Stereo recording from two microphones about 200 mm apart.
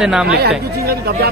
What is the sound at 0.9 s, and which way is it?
Speech, 50° right (ahead or behind).